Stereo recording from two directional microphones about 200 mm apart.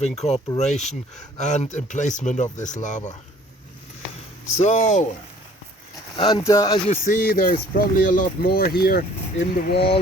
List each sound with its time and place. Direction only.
0.0 s speech: 35° left (ahead or behind)
4.5 s speech: 35° left (ahead or behind)
6.1 s speech: 20° left (ahead or behind)
6.8 s speech: 35° left (ahead or behind)